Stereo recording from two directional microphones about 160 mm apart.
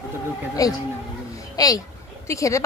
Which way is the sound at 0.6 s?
20° left (ahead or behind).